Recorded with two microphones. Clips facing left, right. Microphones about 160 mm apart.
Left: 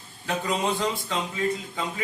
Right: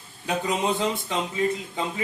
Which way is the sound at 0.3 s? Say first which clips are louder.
Right 1 dB; 20° right (ahead or behind).